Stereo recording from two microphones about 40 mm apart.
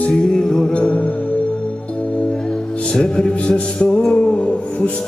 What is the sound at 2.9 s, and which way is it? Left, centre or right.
Music, left.